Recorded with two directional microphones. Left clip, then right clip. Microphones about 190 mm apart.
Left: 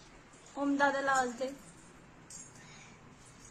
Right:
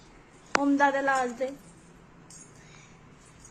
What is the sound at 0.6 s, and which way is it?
Speech, centre (ahead or behind).